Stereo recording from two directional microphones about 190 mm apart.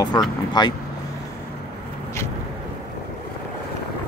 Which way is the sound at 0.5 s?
25° left (ahead or behind).